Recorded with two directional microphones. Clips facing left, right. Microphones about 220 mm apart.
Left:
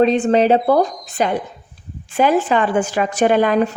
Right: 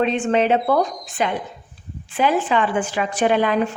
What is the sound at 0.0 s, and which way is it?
A woman's voice, 35° left (ahead or behind).